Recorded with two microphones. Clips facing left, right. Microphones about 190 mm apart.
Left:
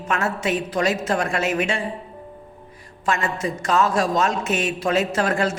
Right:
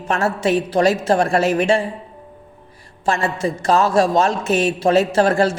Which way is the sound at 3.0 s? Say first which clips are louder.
Right 4 dB; 30° right (ahead or behind).